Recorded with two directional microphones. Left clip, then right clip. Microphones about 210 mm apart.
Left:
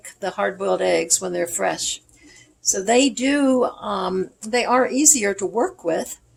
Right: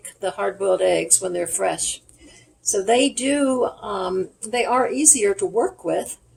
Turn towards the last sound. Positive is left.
turn(degrees=40)  # may be behind; listen again after turning